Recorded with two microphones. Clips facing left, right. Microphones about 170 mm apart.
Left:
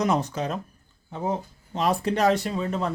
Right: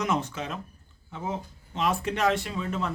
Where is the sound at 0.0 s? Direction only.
35° left (ahead or behind).